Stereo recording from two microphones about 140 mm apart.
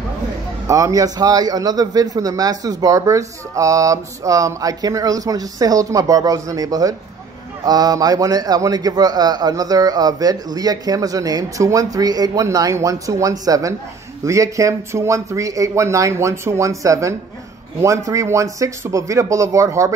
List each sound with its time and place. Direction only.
0.7 s a man's voice: 25° right (ahead or behind)